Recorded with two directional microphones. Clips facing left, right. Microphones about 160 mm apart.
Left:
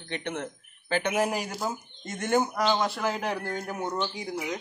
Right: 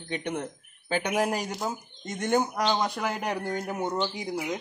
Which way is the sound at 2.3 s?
15° right (ahead or behind).